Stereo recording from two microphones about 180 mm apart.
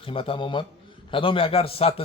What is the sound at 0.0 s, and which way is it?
Speech, 30° left (ahead or behind).